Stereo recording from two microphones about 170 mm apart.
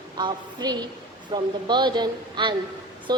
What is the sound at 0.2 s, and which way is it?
A woman's voice, 25° right (ahead or behind).